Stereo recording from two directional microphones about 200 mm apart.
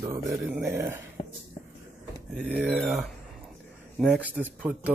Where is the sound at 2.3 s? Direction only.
Centre (ahead or behind).